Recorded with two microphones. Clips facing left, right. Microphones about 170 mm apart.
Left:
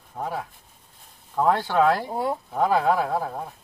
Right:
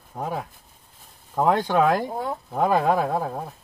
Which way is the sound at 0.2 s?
10° right (ahead or behind).